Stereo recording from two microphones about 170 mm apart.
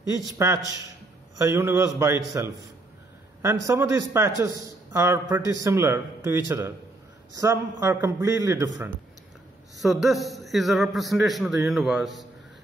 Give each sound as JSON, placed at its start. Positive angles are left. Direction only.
{"t": 1.4, "sound": "a man's voice", "side_deg": -15}
{"t": 3.6, "sound": "a man's voice", "side_deg": -15}
{"t": 9.8, "sound": "a man's voice", "side_deg": 0}